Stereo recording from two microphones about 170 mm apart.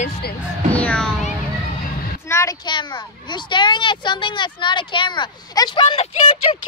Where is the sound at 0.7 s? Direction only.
10° left (ahead or behind).